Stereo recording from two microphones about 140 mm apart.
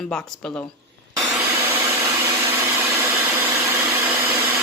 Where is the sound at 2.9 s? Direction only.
20° right (ahead or behind).